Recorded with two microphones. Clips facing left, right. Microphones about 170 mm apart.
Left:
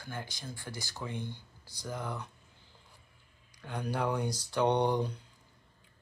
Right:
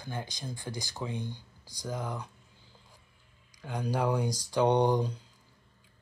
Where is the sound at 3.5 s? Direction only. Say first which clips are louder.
Right 3 dB; 10° right (ahead or behind).